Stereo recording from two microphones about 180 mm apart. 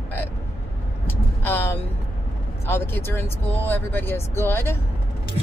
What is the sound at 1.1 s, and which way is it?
Vehicle, 10° left (ahead or behind).